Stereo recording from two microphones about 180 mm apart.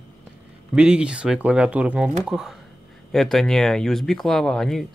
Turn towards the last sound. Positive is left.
turn(degrees=0)  # may be behind; listen again after turning